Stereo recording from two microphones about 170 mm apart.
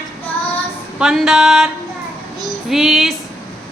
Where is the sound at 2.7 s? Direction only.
Centre (ahead or behind).